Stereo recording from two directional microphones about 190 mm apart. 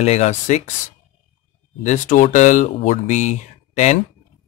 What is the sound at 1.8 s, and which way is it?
A man's voice, 40° left (ahead or behind).